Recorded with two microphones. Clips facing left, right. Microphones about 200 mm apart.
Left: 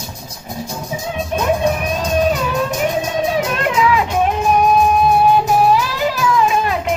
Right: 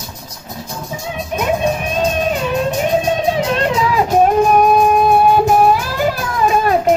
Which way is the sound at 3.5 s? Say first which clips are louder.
Right 1 dB; 35° right (ahead or behind).